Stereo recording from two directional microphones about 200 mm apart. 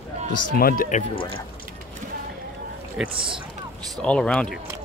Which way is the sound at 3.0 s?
5° right (ahead or behind).